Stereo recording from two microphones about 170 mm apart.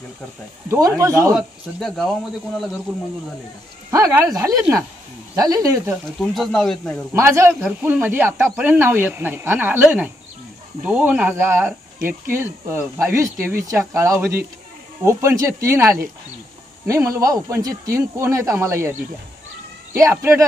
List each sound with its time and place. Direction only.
0.7 s speech: 20° right (ahead or behind)
1.3 s speech: centre (ahead or behind)
3.9 s speech: 15° right (ahead or behind)
6.2 s speech: centre (ahead or behind)
7.2 s a man's voice: 15° right (ahead or behind)